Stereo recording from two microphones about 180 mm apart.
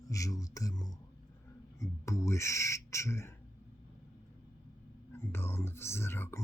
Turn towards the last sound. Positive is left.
turn(degrees=15)  # may be behind; listen again after turning